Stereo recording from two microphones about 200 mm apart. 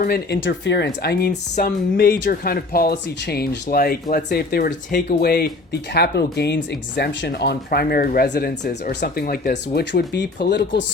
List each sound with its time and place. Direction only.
0.0 s speech: 50° left (ahead or behind)
1.3 s speech: 40° left (ahead or behind); by 10.8 s 60° left (ahead or behind)